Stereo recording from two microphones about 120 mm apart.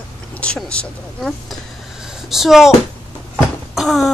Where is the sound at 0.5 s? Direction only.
5° left (ahead or behind).